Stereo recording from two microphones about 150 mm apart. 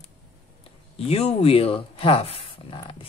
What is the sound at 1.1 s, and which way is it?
A man's voice, 45° left (ahead or behind).